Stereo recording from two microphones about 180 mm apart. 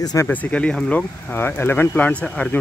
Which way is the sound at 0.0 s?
20° left (ahead or behind).